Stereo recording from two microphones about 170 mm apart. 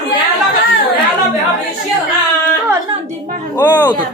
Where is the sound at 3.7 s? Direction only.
25° left (ahead or behind).